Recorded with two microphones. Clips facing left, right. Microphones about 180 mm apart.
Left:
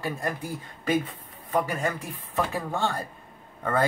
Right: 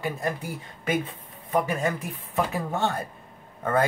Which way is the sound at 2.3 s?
20° right (ahead or behind).